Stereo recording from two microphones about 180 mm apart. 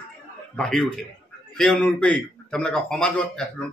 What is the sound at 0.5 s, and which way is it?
A man's voice, 5° left (ahead or behind).